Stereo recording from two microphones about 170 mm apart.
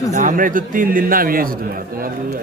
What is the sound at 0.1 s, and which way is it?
A man's voice, 50° right (ahead or behind).